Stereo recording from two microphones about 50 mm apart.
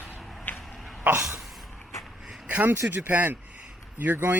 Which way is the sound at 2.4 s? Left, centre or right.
Right.